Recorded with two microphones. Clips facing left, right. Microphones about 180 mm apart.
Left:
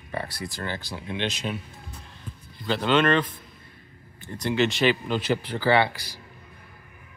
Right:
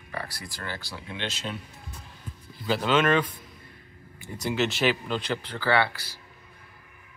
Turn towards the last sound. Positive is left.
turn(degrees=15)  # may be behind; listen again after turning